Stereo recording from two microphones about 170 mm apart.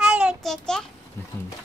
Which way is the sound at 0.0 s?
5° right (ahead or behind).